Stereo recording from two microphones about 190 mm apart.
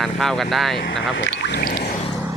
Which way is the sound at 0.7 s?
65° left (ahead or behind).